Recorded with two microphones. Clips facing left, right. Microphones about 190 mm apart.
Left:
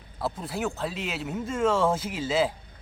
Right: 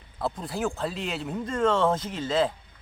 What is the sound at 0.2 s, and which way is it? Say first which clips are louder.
Speech: right 1 dB; 5° left (ahead or behind).